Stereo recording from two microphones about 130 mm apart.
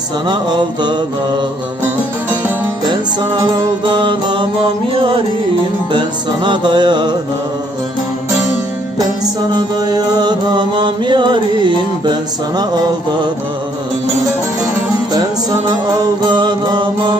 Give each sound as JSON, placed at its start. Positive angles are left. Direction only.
{"t": 0.3, "sound": "music", "side_deg": -35}
{"t": 2.8, "sound": "music", "side_deg": -35}
{"t": 6.4, "sound": "music", "side_deg": -35}
{"t": 9.6, "sound": "music", "side_deg": -30}
{"t": 12.5, "sound": "music", "side_deg": -30}
{"t": 15.1, "sound": "music", "side_deg": -30}